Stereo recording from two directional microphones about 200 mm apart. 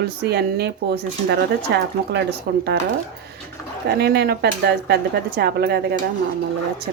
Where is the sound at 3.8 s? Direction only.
50° right (ahead or behind).